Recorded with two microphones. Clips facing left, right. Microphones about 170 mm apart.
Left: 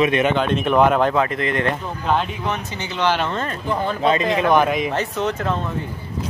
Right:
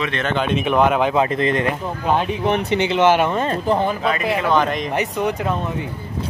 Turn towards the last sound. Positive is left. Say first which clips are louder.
# right 1 dB
turn(degrees=-15)  # may be behind; listen again after turning